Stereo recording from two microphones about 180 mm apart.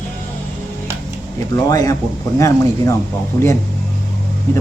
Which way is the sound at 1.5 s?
20° left (ahead or behind).